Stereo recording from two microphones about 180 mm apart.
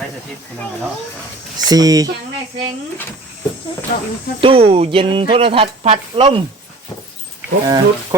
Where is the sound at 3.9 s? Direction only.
55° left (ahead or behind).